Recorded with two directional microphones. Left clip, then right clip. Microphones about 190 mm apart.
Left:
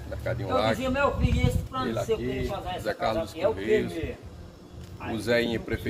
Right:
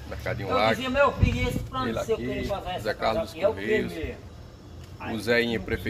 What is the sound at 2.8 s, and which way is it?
Speech, 15° right (ahead or behind).